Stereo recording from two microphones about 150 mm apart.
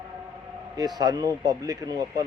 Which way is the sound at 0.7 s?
25° right (ahead or behind).